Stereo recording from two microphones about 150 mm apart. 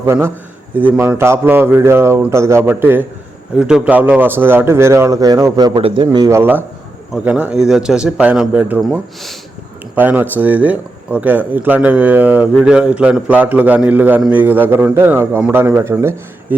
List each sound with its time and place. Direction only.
0.0 s a man's voice: 15° right (ahead or behind); by 6.2 s 35° right (ahead or behind)
6.2 s a man's voice: 15° right (ahead or behind); by 9.3 s centre (ahead or behind)
9.9 s a man's voice: 10° right (ahead or behind)